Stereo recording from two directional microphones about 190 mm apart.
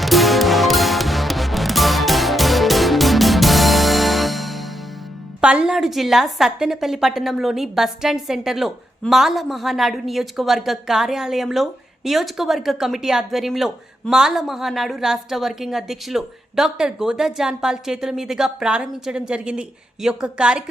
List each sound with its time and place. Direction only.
0.0 s music: centre (ahead or behind)
5.4 s a woman's voice: 5° right (ahead or behind)